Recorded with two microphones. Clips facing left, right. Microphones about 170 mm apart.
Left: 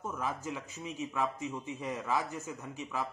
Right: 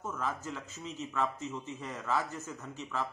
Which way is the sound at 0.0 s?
10° left (ahead or behind).